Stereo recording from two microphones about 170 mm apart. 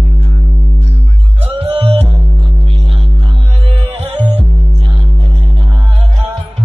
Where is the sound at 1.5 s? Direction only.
35° right (ahead or behind).